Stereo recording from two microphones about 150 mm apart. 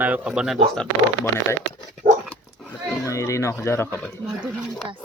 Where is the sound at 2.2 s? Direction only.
5° left (ahead or behind).